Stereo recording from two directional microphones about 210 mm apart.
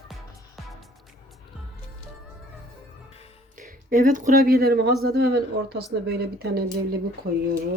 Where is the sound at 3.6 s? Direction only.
40° right (ahead or behind).